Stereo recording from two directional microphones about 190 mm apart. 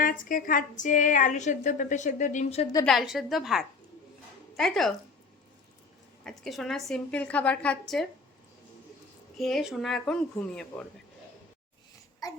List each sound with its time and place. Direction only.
0.0 s a woman's voice: 45° left (ahead or behind)
2.8 s a woman's voice: centre (ahead or behind)
6.2 s a woman's voice: centre (ahead or behind)
9.4 s a woman's voice: centre (ahead or behind)